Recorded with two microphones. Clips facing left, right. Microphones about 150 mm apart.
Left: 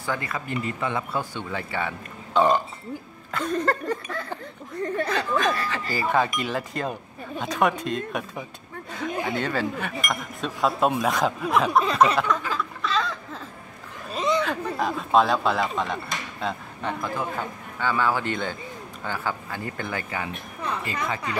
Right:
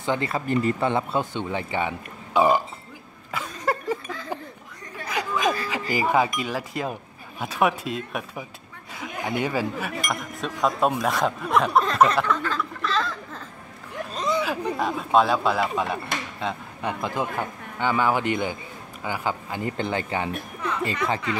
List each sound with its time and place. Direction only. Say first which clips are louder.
0.0 s speech: right 4 dB; 25° right (ahead or behind); by 2.6 s 10° right (ahead or behind)
3.3 s a sound: left 3 dB; 10° right (ahead or behind)
5.0 s speech: right 2 dB; 10° right (ahead or behind)
12.3 s a sound: right 1 dB; 5° left (ahead or behind); by 14.8 s 10° right (ahead or behind)
14.8 s speech: even; centre (ahead or behind)
16.8 s a man's voice: right 1 dB; 20° right (ahead or behind)